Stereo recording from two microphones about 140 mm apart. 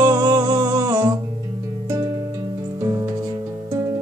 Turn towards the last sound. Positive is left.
turn(degrees=-30)  # may be behind; listen again after turning